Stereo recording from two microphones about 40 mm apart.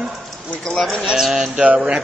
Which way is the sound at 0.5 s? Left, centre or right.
Left.